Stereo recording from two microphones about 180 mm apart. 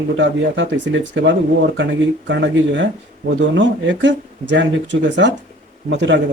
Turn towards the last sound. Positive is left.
turn(degrees=-75)  # may be behind; listen again after turning